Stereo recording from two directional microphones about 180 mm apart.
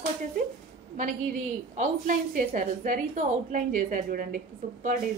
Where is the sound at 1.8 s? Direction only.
45° right (ahead or behind).